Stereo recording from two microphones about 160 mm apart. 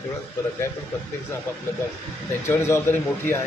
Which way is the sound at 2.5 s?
15° left (ahead or behind).